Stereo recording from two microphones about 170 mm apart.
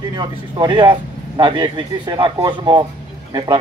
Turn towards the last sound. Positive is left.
turn(degrees=-30)  # may be behind; listen again after turning